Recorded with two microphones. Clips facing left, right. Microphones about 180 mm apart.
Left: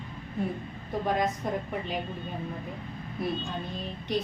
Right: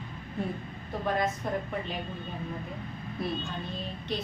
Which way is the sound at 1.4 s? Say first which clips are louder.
Left 1 dB; 15° left (ahead or behind).